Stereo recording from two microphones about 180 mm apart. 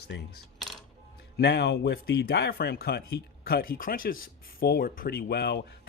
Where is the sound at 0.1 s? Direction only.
85° left.